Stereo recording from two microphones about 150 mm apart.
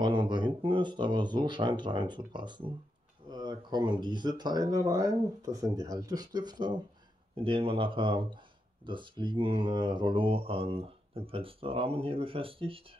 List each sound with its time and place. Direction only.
0.0 s speech: 30° right (ahead or behind)